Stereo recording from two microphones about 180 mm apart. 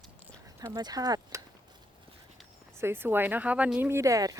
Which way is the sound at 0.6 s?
20° right (ahead or behind).